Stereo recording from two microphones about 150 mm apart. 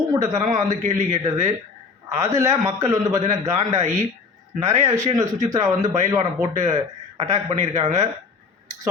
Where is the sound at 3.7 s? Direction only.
50° right (ahead or behind).